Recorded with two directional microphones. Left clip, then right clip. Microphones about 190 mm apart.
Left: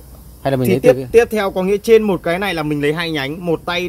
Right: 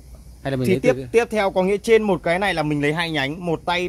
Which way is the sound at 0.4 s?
5° right (ahead or behind).